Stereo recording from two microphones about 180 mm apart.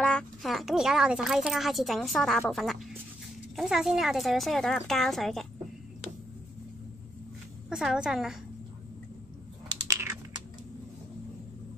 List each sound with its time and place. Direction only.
0.0 s a child's voice: 5° left (ahead or behind)
7.7 s a child's voice: 5° right (ahead or behind)
9.8 s typing: 20° right (ahead or behind)